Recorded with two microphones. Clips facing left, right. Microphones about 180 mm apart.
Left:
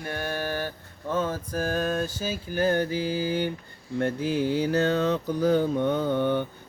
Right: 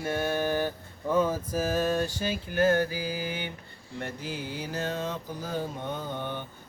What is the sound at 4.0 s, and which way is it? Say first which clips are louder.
Mantra: left 10 dB; 55° left (ahead or behind).